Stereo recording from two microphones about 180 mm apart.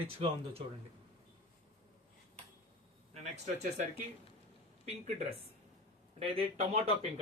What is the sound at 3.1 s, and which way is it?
Speech, 40° right (ahead or behind).